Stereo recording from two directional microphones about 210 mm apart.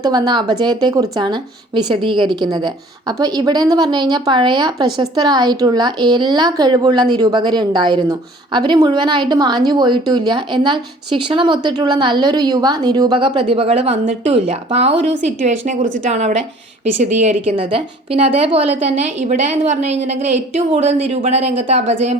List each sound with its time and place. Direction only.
0.0 s a woman's voice: 20° right (ahead or behind)